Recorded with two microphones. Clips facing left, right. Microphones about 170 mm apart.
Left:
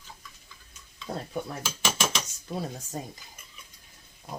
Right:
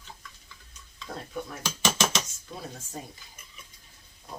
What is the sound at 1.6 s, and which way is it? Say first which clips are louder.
Mechanisms: right 6 dB; centre (ahead or behind).